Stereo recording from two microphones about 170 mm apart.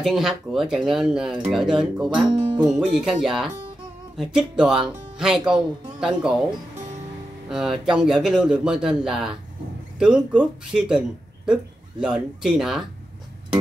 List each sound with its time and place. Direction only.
0.0 s speech: centre (ahead or behind)
2.2 s music: 25° right (ahead or behind)
2.8 s speech: 5° right (ahead or behind)
7.4 s speech: 5° right (ahead or behind)